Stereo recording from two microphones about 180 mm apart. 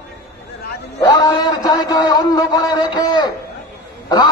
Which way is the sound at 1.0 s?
25° left (ahead or behind).